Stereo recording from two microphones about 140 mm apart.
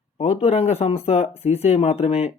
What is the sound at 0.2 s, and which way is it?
Speech, 50° left (ahead or behind).